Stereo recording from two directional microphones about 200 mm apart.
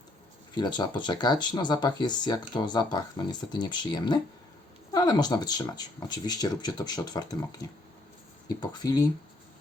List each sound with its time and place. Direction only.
0.5 s speech: 20° left (ahead or behind)